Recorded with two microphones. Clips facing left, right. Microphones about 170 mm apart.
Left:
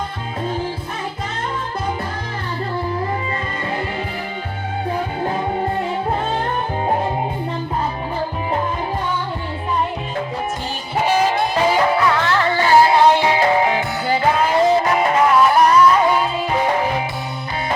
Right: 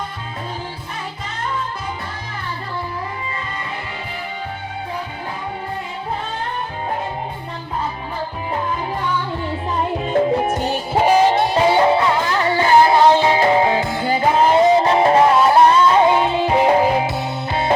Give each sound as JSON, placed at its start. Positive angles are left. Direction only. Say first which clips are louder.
{"t": 10.9, "sound": "music", "louder": "right 3 dB", "side_deg": -30}